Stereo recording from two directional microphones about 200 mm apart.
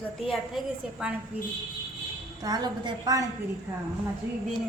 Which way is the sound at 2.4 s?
20° right (ahead or behind).